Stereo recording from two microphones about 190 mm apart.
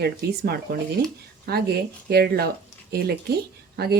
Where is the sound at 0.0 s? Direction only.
55° right (ahead or behind).